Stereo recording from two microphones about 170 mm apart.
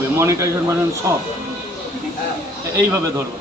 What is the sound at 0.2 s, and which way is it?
A man's voice, 15° right (ahead or behind).